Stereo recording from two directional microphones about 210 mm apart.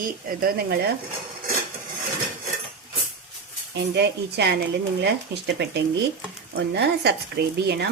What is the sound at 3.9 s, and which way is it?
Speech, 55° right (ahead or behind).